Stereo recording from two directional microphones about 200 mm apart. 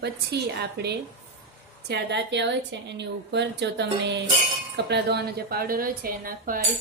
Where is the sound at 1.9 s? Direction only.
60° right (ahead or behind).